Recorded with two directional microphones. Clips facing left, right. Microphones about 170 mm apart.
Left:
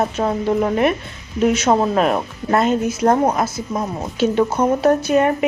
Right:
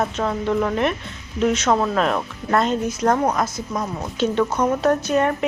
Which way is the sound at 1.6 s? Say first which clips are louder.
Left 3 dB; 25° left (ahead or behind).